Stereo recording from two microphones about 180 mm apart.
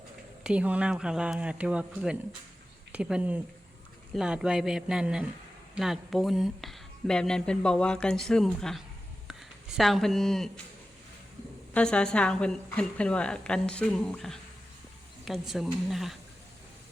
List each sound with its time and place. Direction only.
0.4 s speech: 5° right (ahead or behind)
11.7 s speech: 5° left (ahead or behind)